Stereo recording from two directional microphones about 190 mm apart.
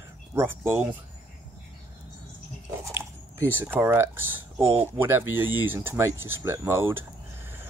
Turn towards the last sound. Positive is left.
turn(degrees=-10)  # may be behind; listen again after turning